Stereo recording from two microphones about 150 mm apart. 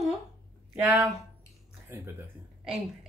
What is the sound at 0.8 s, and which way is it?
Speech, centre (ahead or behind).